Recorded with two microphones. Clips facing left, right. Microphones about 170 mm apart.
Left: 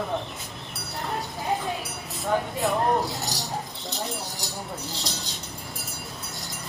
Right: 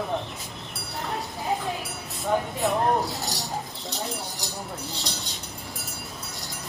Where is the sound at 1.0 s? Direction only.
Centre (ahead or behind).